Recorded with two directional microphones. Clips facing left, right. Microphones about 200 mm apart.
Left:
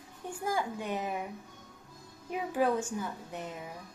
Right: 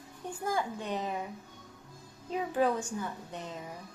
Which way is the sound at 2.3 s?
10° left (ahead or behind).